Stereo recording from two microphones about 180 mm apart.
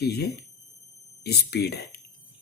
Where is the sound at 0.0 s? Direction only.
65° left (ahead or behind).